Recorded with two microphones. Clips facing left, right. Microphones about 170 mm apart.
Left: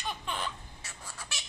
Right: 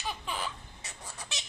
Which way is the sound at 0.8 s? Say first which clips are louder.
Right 3 dB; 20° right (ahead or behind).